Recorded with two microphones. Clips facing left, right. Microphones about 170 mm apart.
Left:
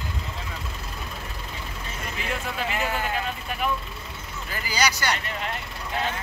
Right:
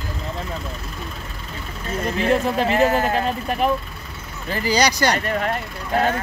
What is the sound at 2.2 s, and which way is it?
Speech, 40° right (ahead or behind).